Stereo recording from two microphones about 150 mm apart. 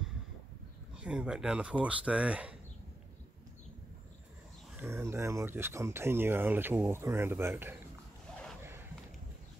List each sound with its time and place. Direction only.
0.9 s speech: 5° right (ahead or behind)
4.7 s speech: 15° right (ahead or behind)